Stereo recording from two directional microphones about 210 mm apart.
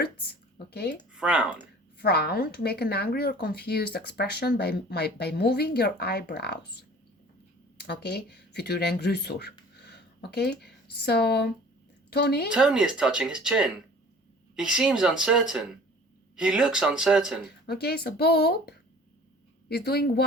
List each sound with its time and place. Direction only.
0.7 s speech: 50° left (ahead or behind)
1.1 s speech: 5° right (ahead or behind)
2.0 s speech: 50° left (ahead or behind)
12.5 s speech: 5° right (ahead or behind)
17.7 s speech: 50° left (ahead or behind)